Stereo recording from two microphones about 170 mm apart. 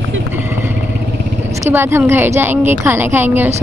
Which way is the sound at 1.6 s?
15° right (ahead or behind).